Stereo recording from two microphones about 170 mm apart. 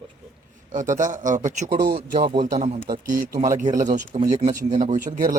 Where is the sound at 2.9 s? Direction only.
55° right (ahead or behind).